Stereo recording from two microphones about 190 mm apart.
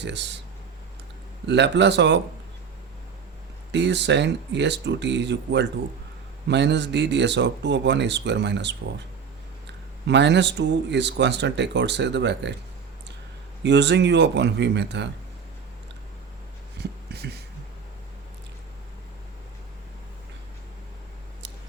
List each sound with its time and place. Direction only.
0.0 s speech: 65° right (ahead or behind)
1.5 s speech: 65° right (ahead or behind)
3.7 s speech: 65° right (ahead or behind)
10.1 s speech: 65° right (ahead or behind)
13.6 s speech: 65° right (ahead or behind)
17.1 s a sound: 60° right (ahead or behind)